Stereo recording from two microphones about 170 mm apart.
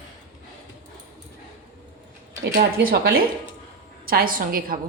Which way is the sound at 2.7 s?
65° right (ahead or behind).